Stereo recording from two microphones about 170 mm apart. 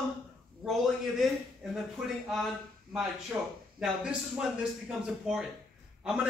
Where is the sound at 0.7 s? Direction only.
Centre (ahead or behind).